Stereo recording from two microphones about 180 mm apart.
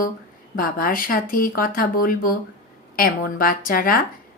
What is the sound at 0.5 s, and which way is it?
A woman's voice, 50° left (ahead or behind).